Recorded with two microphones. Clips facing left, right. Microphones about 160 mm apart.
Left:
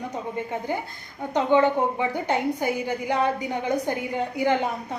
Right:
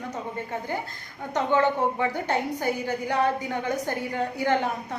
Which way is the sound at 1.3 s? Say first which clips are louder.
Left 3 dB; 15° left (ahead or behind).